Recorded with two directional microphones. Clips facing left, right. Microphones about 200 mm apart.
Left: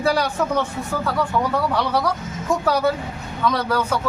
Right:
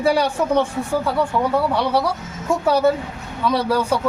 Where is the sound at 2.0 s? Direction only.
10° right (ahead or behind).